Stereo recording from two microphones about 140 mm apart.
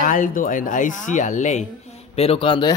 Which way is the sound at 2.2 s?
40° left (ahead or behind).